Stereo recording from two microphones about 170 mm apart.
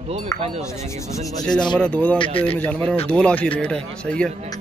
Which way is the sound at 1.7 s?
5° left (ahead or behind).